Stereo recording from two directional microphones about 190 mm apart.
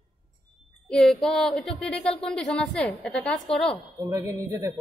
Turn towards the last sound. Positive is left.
turn(degrees=-15)  # may be behind; listen again after turning